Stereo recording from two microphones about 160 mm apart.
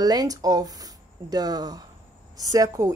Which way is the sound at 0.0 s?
25° right (ahead or behind).